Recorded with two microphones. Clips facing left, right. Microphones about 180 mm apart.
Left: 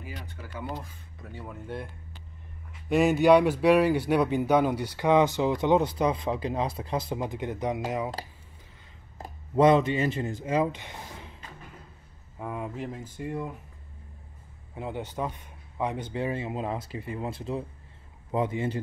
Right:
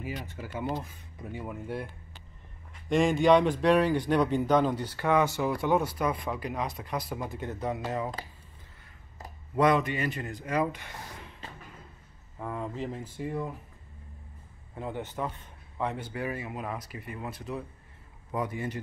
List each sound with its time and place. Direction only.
0.1 s speech: 20° right (ahead or behind)
2.9 s speech: 5° left (ahead or behind)
9.6 s speech: 25° left (ahead or behind)
12.4 s speech: 10° left (ahead or behind)
14.8 s speech: 15° left (ahead or behind)